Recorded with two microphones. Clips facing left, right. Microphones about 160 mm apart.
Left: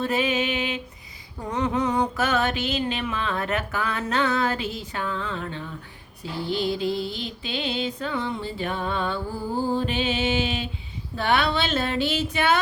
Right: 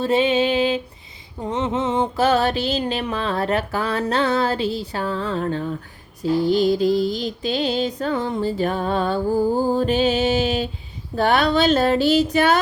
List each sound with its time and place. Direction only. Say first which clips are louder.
0.0 s mantra: right 6 dB; 30° right (ahead or behind)